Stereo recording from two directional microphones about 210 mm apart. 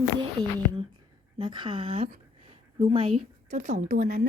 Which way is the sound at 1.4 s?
20° right (ahead or behind).